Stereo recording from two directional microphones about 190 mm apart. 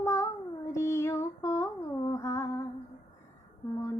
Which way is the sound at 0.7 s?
15° left (ahead or behind).